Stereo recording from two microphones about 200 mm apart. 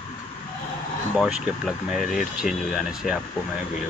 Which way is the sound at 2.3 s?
5° right (ahead or behind).